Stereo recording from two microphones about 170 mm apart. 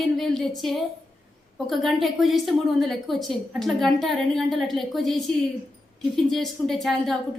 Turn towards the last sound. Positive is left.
turn(degrees=0)  # may be behind; listen again after turning